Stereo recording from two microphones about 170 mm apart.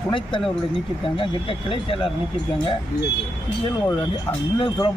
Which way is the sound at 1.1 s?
30° left (ahead or behind).